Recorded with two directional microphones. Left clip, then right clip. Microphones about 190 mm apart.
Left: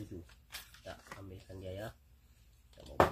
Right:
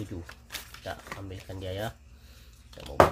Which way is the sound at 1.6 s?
40° right (ahead or behind).